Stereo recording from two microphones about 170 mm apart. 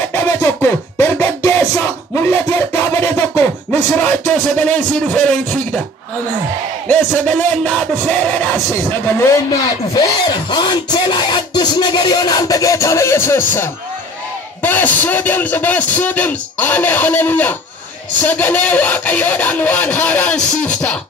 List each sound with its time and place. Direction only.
0.1 s music: 15° left (ahead or behind)
6.9 s speech: 5° left (ahead or behind)
9.9 s speech: 25° left (ahead or behind); by 21.0 s 10° left (ahead or behind)